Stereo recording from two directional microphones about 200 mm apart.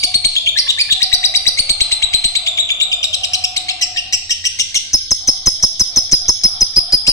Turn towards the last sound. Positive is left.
turn(degrees=15)  # may be behind; listen again after turning